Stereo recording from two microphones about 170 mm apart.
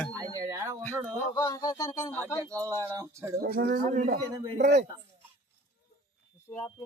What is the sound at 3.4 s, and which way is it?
Speech, 65° right (ahead or behind).